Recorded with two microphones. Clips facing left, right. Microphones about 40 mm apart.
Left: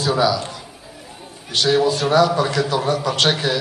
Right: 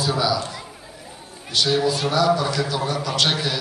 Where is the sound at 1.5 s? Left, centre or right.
Left.